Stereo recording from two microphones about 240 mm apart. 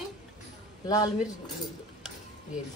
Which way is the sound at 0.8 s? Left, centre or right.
Centre.